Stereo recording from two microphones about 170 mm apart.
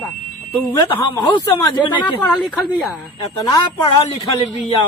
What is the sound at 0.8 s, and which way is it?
Speech, 25° left (ahead or behind).